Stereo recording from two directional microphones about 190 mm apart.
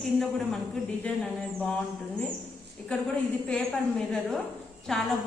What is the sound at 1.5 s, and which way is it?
A woman's voice, 5° left (ahead or behind).